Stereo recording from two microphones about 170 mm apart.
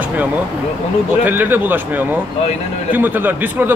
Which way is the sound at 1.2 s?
10° right (ahead or behind).